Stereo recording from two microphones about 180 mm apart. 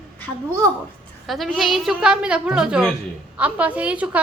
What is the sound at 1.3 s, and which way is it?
A woman's voice, centre (ahead or behind).